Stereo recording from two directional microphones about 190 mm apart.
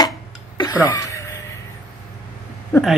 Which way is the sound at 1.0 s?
15° left (ahead or behind).